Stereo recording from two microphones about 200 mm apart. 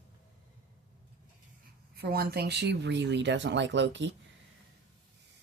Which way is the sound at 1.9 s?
50° right (ahead or behind).